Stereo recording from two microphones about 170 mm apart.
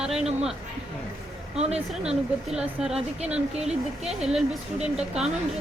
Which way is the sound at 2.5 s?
5° right (ahead or behind).